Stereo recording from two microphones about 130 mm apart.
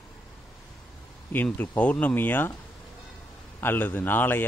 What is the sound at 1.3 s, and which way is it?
A man's voice, 15° left (ahead or behind).